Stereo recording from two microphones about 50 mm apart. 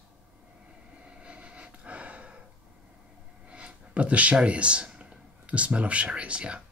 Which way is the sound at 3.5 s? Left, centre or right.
Right.